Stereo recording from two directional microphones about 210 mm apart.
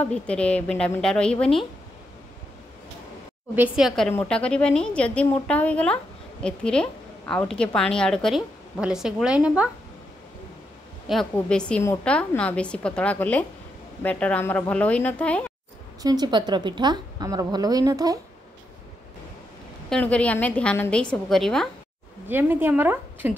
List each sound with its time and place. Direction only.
0.0 s a woman's voice: 5° left (ahead or behind)
3.5 s a woman's voice: 5° right (ahead or behind)
11.1 s a woman's voice: 5° left (ahead or behind)
16.0 s a woman's voice: 20° right (ahead or behind)
19.9 s a woman's voice: 5° left (ahead or behind)
22.3 s a woman's voice: 10° right (ahead or behind)